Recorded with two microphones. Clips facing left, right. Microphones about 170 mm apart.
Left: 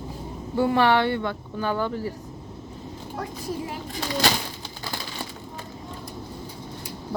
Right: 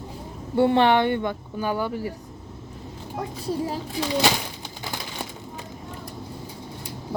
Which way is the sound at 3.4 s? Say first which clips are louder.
Right 6 dB; 30° right (ahead or behind).